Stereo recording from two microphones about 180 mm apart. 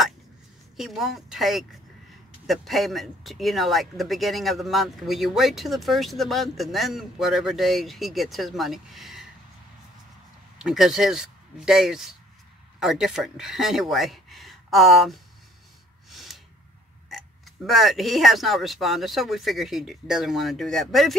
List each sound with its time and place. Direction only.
0.7 s speech: centre (ahead or behind)
10.6 s speech: centre (ahead or behind)
16.1 s a sound: centre (ahead or behind)
17.6 s speech: centre (ahead or behind)